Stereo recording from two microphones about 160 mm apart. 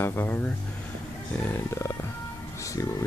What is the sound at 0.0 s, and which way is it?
Speech, 15° left (ahead or behind).